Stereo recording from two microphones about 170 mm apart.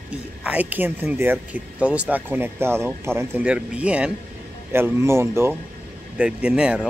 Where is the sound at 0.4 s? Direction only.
10° right (ahead or behind).